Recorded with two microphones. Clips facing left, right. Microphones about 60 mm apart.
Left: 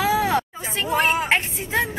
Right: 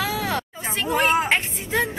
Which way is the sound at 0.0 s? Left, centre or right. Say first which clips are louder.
Left 5 dB; centre.